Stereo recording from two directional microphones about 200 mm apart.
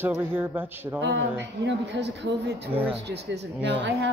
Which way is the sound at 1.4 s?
60° right (ahead or behind).